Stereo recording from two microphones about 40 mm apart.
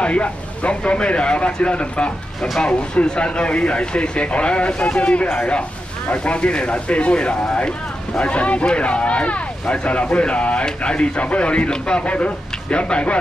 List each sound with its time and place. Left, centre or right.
0.0 s speech: left